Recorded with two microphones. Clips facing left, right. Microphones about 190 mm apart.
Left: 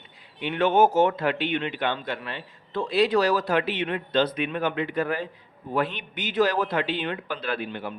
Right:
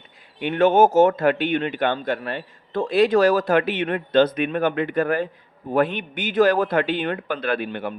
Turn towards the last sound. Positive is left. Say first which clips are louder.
# right 5 dB
turn(degrees=-60)  # may be behind; listen again after turning